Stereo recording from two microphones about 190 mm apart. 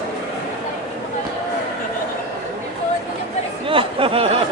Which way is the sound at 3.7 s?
30° right (ahead or behind).